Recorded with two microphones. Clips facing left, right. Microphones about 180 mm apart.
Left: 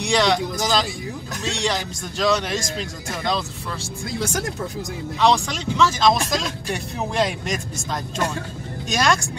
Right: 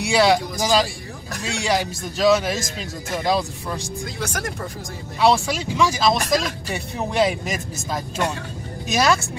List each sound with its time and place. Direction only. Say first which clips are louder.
0.0 s a man's voice: right 2 dB; 5° right (ahead or behind)
5.2 s a man's voice: right 1 dB; 10° right (ahead or behind)